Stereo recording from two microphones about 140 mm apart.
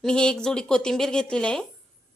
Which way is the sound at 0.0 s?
5° left (ahead or behind).